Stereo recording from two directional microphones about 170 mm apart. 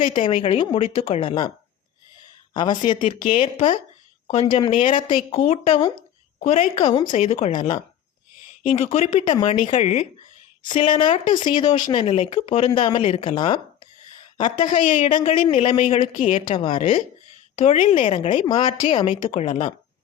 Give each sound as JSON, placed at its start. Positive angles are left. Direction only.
{"t": 0.0, "sound": "speech", "side_deg": 30}
{"t": 2.5, "sound": "a woman's voice", "side_deg": 25}
{"t": 8.8, "sound": "speech", "side_deg": 35}
{"t": 10.6, "sound": "a woman's voice", "side_deg": 30}
{"t": 14.8, "sound": "speech", "side_deg": 45}
{"t": 15.1, "sound": "speech", "side_deg": 30}
{"t": 17.6, "sound": "speech", "side_deg": 45}
{"t": 17.8, "sound": "speech", "side_deg": 30}